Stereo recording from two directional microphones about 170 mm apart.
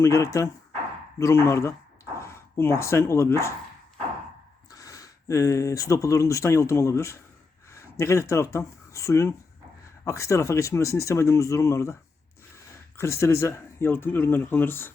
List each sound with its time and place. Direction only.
0.0 s speech: 20° left (ahead or behind)
4.7 s speech: 20° left (ahead or behind)
13.0 s speech: 15° left (ahead or behind)